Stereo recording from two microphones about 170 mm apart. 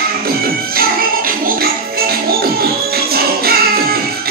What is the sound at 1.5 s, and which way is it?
Music, 60° right (ahead or behind).